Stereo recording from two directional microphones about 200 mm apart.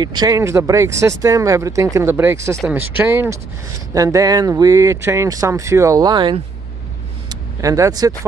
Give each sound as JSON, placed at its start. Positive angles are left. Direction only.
{"t": 0.0, "sound": "speech", "side_deg": -20}